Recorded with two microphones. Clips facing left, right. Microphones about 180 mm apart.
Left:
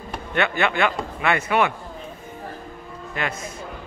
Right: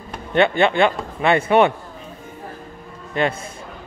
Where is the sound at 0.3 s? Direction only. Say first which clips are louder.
Right 6 dB; 30° right (ahead or behind).